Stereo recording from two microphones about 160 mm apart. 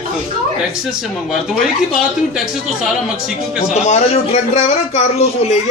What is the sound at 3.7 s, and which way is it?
A man's voice, 45° left (ahead or behind).